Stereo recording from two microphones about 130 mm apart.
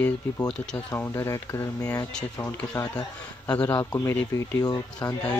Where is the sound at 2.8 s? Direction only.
15° left (ahead or behind).